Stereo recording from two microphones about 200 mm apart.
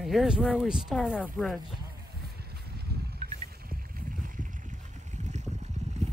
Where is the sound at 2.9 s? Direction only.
55° right (ahead or behind).